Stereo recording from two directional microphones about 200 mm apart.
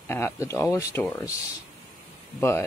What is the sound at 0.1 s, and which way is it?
Speech, 15° left (ahead or behind).